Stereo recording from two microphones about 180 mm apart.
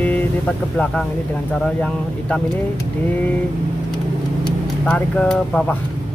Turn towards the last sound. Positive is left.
turn(degrees=5)  # may be behind; listen again after turning